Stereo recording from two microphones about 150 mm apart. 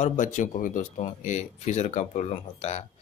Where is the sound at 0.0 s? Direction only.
55° left (ahead or behind).